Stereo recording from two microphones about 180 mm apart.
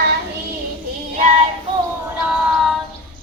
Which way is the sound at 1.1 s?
45° right (ahead or behind).